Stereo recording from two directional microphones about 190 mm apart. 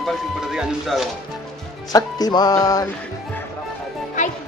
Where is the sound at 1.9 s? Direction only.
20° left (ahead or behind).